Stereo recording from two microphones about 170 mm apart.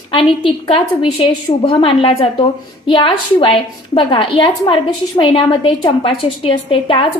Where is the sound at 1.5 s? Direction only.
30° left (ahead or behind).